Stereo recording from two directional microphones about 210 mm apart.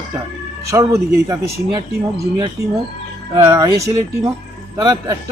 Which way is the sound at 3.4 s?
15° right (ahead or behind).